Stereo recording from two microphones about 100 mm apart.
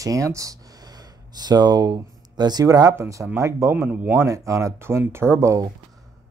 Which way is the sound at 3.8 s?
15° right (ahead or behind).